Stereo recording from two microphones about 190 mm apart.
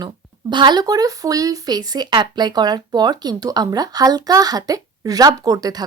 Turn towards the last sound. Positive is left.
turn(degrees=-20)  # may be behind; listen again after turning